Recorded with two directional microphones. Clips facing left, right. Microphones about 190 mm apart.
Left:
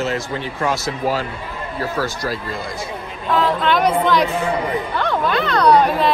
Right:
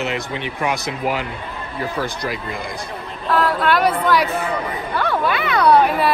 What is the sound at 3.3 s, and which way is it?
A woman's voice, 5° right (ahead or behind).